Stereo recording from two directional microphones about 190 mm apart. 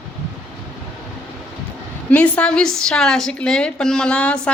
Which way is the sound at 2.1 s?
5° left (ahead or behind).